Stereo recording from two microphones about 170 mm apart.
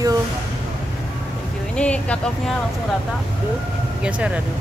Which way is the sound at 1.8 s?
5° left (ahead or behind).